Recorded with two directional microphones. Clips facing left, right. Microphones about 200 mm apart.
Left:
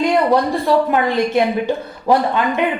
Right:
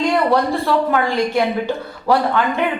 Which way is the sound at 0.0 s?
15° left (ahead or behind).